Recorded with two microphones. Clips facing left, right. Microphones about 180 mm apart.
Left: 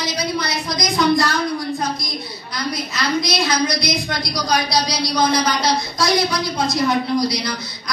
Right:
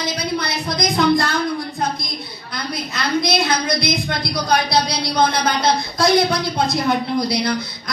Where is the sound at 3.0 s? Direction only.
55° right (ahead or behind).